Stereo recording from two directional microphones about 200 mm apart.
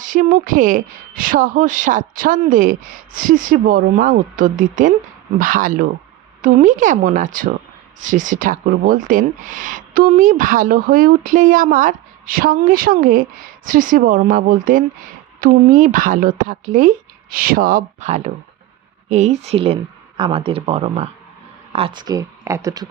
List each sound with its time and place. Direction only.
0.0 s speech: 40° right (ahead or behind); by 22.9 s 15° right (ahead or behind)